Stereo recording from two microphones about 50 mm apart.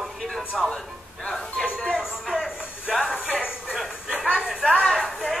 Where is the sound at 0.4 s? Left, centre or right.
Centre.